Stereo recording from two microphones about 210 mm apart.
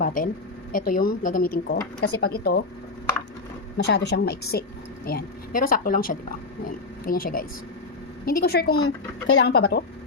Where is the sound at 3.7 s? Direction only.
55° left (ahead or behind).